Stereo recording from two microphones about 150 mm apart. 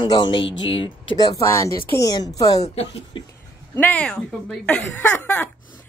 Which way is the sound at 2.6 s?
45° left (ahead or behind).